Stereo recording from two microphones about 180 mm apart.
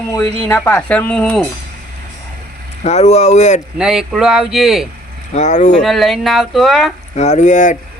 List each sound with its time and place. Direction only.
0.4 s speech: 10° left (ahead or behind)
2.8 s speech: 35° left (ahead or behind)
3.8 s speech: 5° right (ahead or behind)
5.3 s speech: 40° left (ahead or behind)
5.8 s speech: centre (ahead or behind)
7.2 s speech: 40° left (ahead or behind)